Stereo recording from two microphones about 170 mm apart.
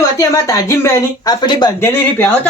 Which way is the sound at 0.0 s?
20° left (ahead or behind).